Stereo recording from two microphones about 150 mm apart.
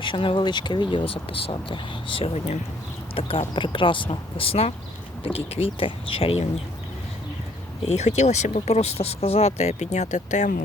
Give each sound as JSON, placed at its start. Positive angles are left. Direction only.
{"t": 0.0, "sound": "speech", "side_deg": 35}
{"t": 7.9, "sound": "speech", "side_deg": 50}